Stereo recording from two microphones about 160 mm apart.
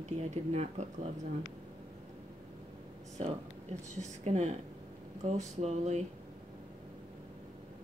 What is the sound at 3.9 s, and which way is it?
Speech, 45° right (ahead or behind).